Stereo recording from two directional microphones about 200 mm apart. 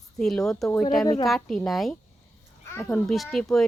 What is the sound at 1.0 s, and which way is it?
Speech, 20° left (ahead or behind).